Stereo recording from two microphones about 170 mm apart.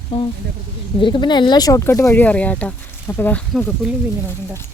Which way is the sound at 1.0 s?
25° left (ahead or behind).